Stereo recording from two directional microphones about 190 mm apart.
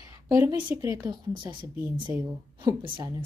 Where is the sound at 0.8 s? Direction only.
15° right (ahead or behind).